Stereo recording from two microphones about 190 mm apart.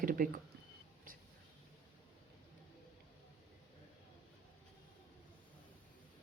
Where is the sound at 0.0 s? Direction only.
45° right (ahead or behind).